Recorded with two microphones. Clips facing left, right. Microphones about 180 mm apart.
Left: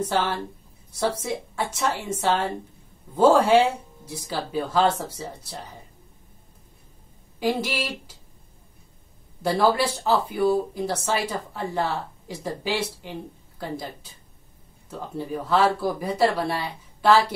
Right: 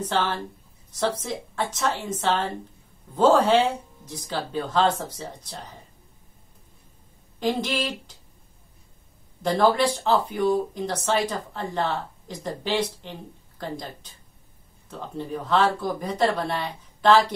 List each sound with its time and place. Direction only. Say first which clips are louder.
0.0 s speech: left 1 dB; 10° left (ahead or behind)
7.3 s speech: even; 10° left (ahead or behind)
9.4 s speech: right 1 dB; 10° left (ahead or behind)
14.9 s speech: left 1 dB; 10° left (ahead or behind)